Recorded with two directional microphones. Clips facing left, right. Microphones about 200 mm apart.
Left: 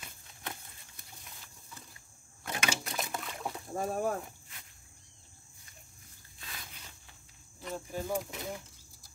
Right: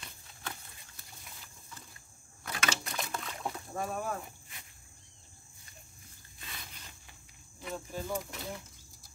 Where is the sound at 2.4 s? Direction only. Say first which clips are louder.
Left 1 dB; 15° left (ahead or behind).